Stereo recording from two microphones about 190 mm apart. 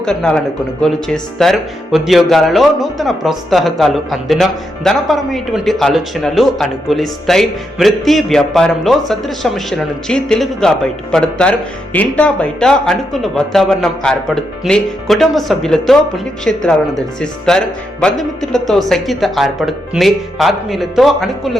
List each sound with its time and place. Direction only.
0.0 s speech: 5° left (ahead or behind)